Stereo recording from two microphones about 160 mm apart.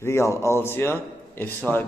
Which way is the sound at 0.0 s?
15° left (ahead or behind).